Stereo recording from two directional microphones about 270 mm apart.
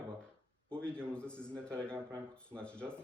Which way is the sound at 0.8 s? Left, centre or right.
Centre.